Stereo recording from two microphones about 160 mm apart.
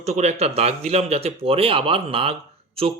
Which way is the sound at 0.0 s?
45° right (ahead or behind).